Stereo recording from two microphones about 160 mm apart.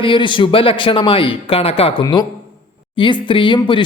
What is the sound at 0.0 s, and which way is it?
A man's voice, 30° left (ahead or behind).